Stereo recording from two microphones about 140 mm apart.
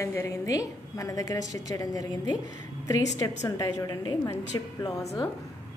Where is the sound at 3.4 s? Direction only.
25° left (ahead or behind).